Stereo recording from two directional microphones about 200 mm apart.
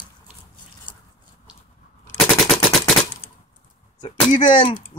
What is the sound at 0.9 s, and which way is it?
Biting, 25° left (ahead or behind).